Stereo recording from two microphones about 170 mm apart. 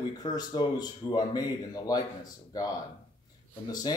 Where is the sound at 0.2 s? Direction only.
25° left (ahead or behind).